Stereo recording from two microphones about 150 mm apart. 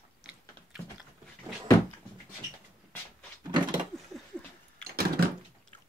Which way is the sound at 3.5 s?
30° right (ahead or behind).